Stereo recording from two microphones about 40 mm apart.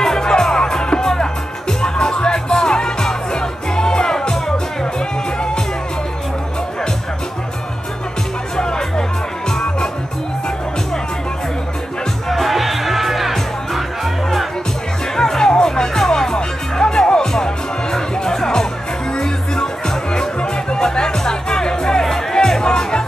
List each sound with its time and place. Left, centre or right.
0.0 s music: centre
8.5 s music: centre
12.3 s music: centre
15.1 s music: centre